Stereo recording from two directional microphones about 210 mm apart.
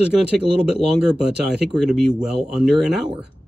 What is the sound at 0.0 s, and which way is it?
Speech, 25° left (ahead or behind).